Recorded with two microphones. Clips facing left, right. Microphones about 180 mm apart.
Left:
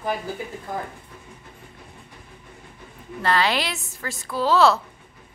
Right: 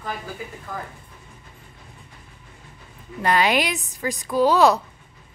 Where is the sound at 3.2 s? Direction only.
15° right (ahead or behind).